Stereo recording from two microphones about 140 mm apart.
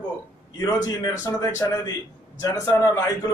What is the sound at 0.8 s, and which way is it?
A man's voice, 25° left (ahead or behind).